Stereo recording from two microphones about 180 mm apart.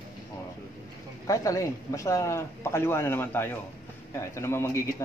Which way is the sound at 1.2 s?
20° left (ahead or behind).